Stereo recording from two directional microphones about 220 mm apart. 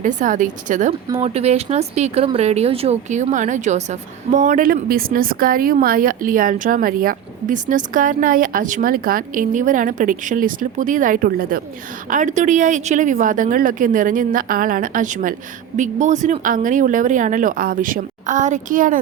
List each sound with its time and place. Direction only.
0.0 s speech: 35° right (ahead or behind)